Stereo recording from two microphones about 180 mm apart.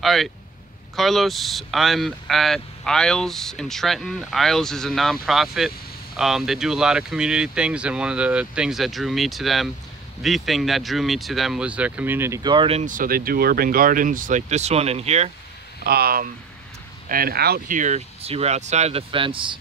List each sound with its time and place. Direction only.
0.0 s speech: centre (ahead or behind); by 12.8 s 30° right (ahead or behind)
12.8 s speech: 50° right (ahead or behind)
15.8 s speech: 60° right (ahead or behind); by 19.6 s 30° right (ahead or behind)